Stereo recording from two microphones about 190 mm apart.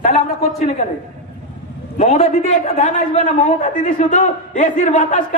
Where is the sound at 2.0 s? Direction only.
35° left (ahead or behind).